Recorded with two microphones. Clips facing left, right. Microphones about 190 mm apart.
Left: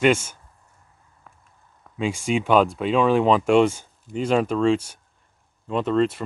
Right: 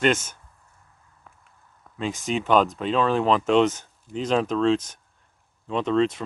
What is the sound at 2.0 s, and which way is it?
Speech, 10° left (ahead or behind).